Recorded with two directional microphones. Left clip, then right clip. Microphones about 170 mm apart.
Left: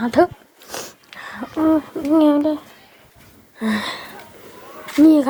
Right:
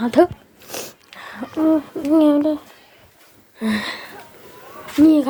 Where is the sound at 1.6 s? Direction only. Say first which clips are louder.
Even; 15° left (ahead or behind).